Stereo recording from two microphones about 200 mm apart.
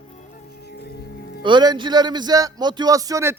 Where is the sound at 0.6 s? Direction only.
55° left (ahead or behind).